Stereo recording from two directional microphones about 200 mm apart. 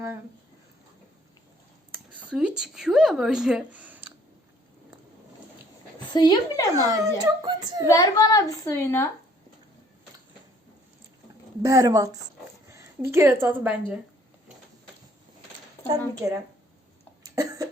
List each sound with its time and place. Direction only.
1.9 s a sound: 5° right (ahead or behind)
2.6 s a woman's voice: 5° right (ahead or behind)
6.1 s a woman's voice: 20° left (ahead or behind)
6.7 s speech: 15° right (ahead or behind)
7.9 s a woman's voice: 15° left (ahead or behind)
11.6 s a woman's voice: 15° right (ahead or behind)
16.2 s speech: 15° right (ahead or behind)
17.2 s cough: 20° right (ahead or behind)